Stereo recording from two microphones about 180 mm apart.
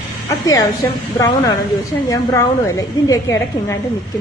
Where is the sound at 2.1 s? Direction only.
15° left (ahead or behind).